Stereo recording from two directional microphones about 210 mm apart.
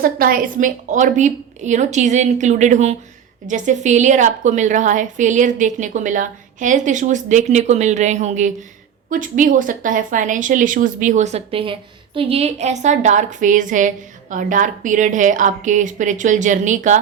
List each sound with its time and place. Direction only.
0.0 s speech: 45° right (ahead or behind)